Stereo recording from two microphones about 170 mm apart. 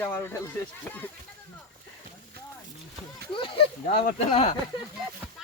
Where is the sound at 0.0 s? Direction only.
15° left (ahead or behind).